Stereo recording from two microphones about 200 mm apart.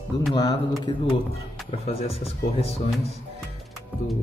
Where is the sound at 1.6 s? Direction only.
30° left (ahead or behind).